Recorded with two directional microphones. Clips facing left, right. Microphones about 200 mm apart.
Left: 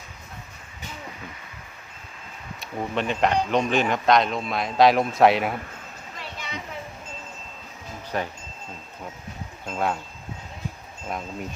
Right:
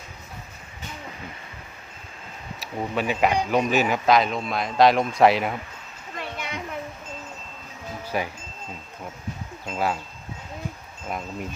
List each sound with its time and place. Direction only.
2.6 s speech: 5° right (ahead or behind)
6.1 s a sound: 55° right (ahead or behind)
8.1 s speech: 10° right (ahead or behind)
9.6 s speech: 5° right (ahead or behind)